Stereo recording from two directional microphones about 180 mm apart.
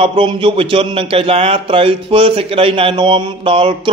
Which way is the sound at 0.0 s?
30° right (ahead or behind).